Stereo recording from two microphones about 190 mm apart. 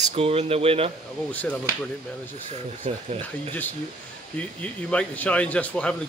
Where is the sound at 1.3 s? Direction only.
10° left (ahead or behind).